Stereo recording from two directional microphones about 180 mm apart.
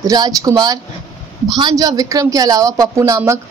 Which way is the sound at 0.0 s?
20° right (ahead or behind).